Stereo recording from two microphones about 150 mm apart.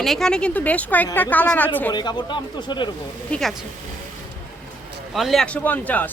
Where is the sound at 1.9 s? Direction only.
30° left (ahead or behind).